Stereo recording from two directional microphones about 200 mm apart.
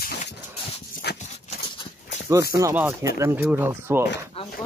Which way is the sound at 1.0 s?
55° left (ahead or behind).